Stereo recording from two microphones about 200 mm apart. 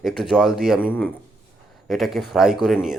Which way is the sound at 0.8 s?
10° left (ahead or behind).